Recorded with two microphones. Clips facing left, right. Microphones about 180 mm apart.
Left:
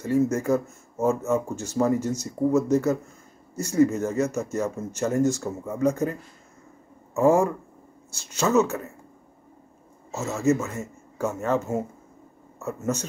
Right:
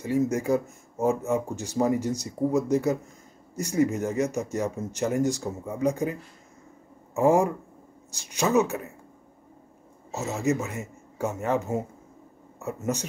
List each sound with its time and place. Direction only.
0.0 s speech: 15° right (ahead or behind)
7.2 s speech: 15° right (ahead or behind)
10.1 s speech: 15° right (ahead or behind)